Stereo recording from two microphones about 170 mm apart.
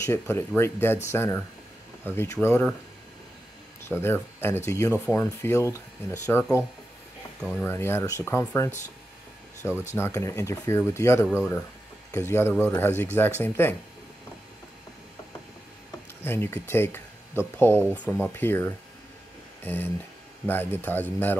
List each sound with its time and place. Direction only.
0.0 s speech: 15° left (ahead or behind)
3.9 s speech: 15° left (ahead or behind)
7.6 s speech: 15° left (ahead or behind)
16.3 s speech: 15° left (ahead or behind)